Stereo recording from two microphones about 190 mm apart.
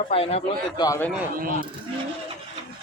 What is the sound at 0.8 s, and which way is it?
Speech, 15° left (ahead or behind).